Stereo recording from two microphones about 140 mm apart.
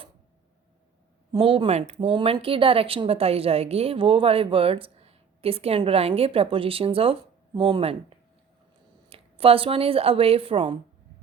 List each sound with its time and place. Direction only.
1.3 s speech: 35° right (ahead or behind)
2.0 s speech: 35° right (ahead or behind)
9.0 s a woman's voice: 45° right (ahead or behind)